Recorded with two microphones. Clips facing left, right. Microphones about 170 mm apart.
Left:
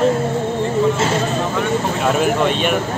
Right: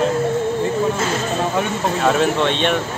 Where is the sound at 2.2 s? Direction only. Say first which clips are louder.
Left 1 dB; 5° left (ahead or behind).